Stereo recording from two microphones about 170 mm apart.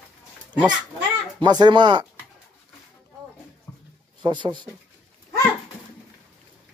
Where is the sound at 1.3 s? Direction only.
25° right (ahead or behind).